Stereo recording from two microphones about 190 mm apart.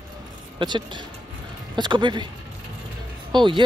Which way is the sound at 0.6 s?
25° right (ahead or behind).